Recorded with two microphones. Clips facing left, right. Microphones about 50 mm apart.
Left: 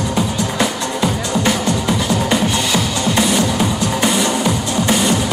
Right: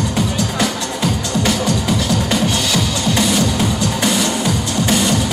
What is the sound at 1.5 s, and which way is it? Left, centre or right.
Music, centre.